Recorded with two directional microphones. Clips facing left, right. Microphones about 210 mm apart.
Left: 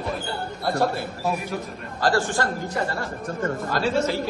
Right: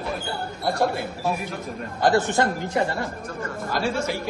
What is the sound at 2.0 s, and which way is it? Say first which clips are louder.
A man's voice: right 2 dB; 20° right (ahead or behind).